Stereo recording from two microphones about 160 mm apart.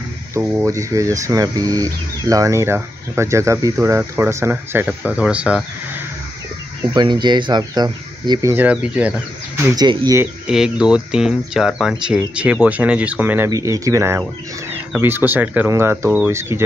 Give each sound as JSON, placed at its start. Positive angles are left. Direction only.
{"t": 0.3, "sound": "speech", "side_deg": -15}
{"t": 7.0, "sound": "speech", "side_deg": -30}
{"t": 9.6, "sound": "speech", "side_deg": -20}
{"t": 10.4, "sound": "speech", "side_deg": -5}